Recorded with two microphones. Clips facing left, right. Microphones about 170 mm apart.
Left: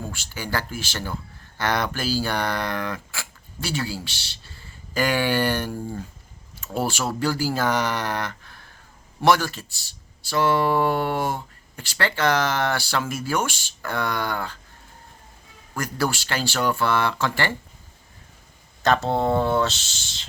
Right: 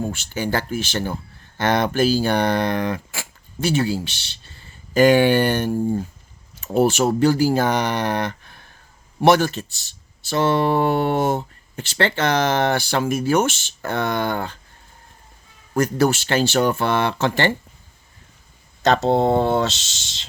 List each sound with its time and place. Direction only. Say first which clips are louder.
0.0 s speech: right 8 dB; 20° right (ahead or behind)
6.7 s speech: right 9 dB; 20° right (ahead or behind)
16.0 s speech: right 5 dB; 20° right (ahead or behind)
18.8 s speech: right 4 dB; 20° right (ahead or behind)